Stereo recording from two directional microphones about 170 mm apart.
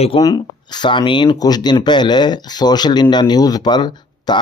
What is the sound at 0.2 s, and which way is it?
Speech, 25° left (ahead or behind).